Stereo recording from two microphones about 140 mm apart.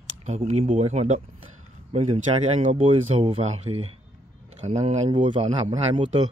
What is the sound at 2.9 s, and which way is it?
Speech, 40° right (ahead or behind).